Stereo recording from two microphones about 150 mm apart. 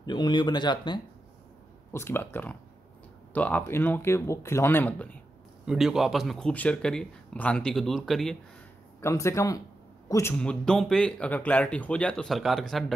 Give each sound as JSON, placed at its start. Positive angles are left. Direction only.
{"t": 0.0, "sound": "speech", "side_deg": 30}
{"t": 1.9, "sound": "speech", "side_deg": 15}
{"t": 5.7, "sound": "speech", "side_deg": -5}
{"t": 9.0, "sound": "a man's voice", "side_deg": 20}
{"t": 10.3, "sound": "speech", "side_deg": 5}